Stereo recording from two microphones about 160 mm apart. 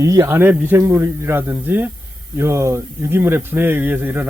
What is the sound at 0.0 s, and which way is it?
A man's voice, 20° right (ahead or behind).